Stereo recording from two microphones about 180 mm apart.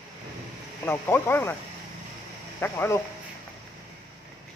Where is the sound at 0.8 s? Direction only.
10° left (ahead or behind).